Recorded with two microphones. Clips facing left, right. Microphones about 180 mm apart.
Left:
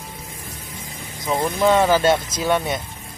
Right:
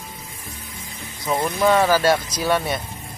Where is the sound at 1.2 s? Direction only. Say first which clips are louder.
Left 1 dB; 10° left (ahead or behind).